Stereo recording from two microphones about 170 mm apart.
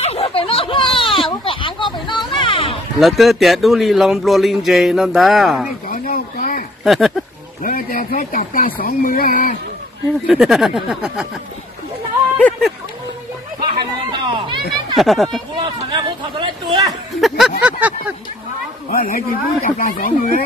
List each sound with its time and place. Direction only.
0.0 s a sound: 35° left (ahead or behind)
3.0 s a man's voice: centre (ahead or behind)
5.9 s a sound: 55° left (ahead or behind)
6.8 s speech: centre (ahead or behind)
7.6 s speech: 55° left (ahead or behind)
10.2 s a man's voice: centre (ahead or behind)
12.4 s a sound: 10° left (ahead or behind)
13.7 s chatter: 25° right (ahead or behind)
15.0 s a man's voice: centre (ahead or behind)
15.5 s speech: 30° right (ahead or behind)
17.7 s a sound: 10° right (ahead or behind)
18.9 s speech: 55° left (ahead or behind)